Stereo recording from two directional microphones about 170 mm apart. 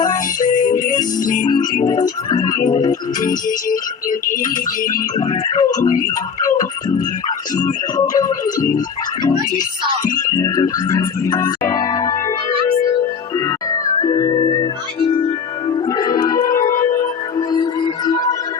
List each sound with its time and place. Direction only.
0.4 s music: 50° left (ahead or behind)
1.9 s music: 20° left (ahead or behind)
3.2 s music: 55° left (ahead or behind)
5.3 s music: 20° left (ahead or behind)
8.1 s music: 20° left (ahead or behind)
10.2 s organ: 20° left (ahead or behind)
13.3 s music: 20° left (ahead or behind)